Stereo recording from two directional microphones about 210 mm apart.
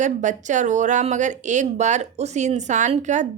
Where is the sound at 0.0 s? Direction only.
35° right (ahead or behind).